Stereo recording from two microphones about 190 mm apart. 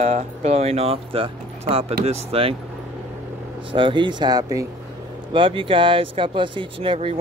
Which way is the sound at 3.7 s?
25° right (ahead or behind).